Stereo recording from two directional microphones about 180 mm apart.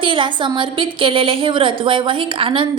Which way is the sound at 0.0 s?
30° right (ahead or behind).